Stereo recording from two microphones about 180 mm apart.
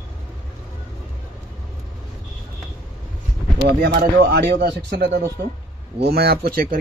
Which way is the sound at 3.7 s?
60° right (ahead or behind).